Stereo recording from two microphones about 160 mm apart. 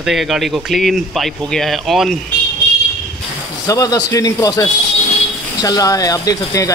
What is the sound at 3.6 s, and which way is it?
Speech, 20° left (ahead or behind).